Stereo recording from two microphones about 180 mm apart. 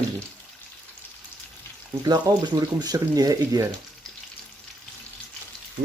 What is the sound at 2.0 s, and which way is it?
Speech, 20° right (ahead or behind).